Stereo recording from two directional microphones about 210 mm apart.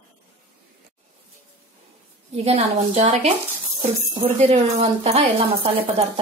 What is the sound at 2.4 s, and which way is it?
Speech, 30° right (ahead or behind).